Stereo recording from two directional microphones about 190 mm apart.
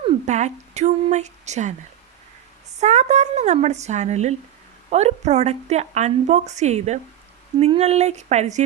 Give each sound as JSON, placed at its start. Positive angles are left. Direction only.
{"t": 0.0, "sound": "speech", "side_deg": -40}
{"t": 2.7, "sound": "a woman's voice", "side_deg": -35}